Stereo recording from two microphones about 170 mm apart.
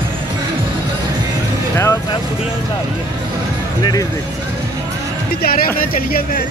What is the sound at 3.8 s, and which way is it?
Speech, 20° left (ahead or behind).